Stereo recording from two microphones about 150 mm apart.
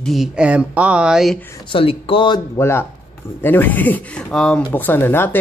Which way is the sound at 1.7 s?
35° left (ahead or behind).